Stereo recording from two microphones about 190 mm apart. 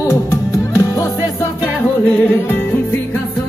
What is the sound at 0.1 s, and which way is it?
Music, 15° left (ahead or behind).